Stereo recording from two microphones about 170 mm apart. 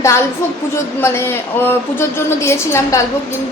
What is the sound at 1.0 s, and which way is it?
A woman's voice, 15° left (ahead or behind).